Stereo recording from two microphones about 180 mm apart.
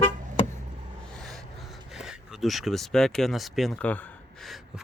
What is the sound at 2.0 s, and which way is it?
Speech, centre (ahead or behind).